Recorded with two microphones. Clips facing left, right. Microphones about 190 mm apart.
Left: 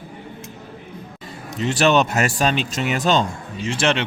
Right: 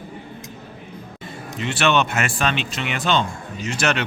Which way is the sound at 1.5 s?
40° left (ahead or behind).